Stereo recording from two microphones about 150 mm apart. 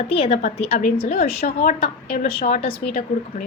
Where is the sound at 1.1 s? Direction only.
80° left.